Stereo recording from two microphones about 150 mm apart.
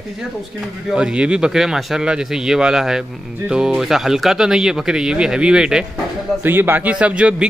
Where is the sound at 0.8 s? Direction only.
5° right (ahead or behind).